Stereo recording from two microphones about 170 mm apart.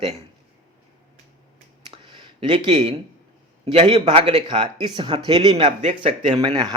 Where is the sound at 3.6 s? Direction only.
30° right (ahead or behind).